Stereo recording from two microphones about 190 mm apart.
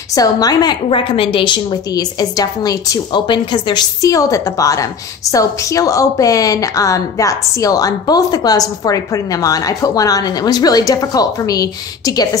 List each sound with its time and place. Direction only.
0.1 s a woman's voice: 20° left (ahead or behind)